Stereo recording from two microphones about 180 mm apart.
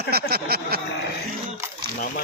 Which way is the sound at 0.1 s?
60° right (ahead or behind).